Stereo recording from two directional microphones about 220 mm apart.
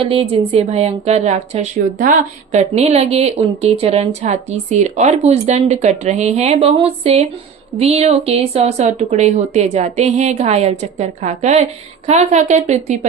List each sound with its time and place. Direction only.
0.0 s a woman's voice: 25° right (ahead or behind)